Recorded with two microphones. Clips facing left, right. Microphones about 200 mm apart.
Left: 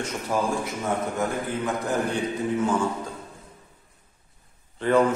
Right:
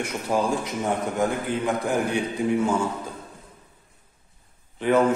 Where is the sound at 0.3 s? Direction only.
15° right (ahead or behind).